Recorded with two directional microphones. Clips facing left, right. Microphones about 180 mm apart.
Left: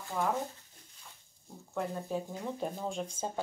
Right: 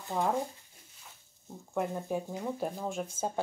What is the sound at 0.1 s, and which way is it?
Speech, 30° right (ahead or behind).